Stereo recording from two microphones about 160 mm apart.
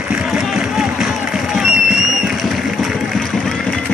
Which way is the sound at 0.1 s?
5° right (ahead or behind).